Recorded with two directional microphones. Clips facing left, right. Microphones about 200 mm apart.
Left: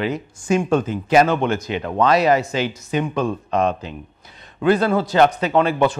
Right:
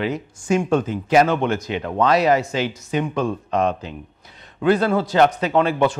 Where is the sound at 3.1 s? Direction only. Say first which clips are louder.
Left 1 dB; 15° left (ahead or behind).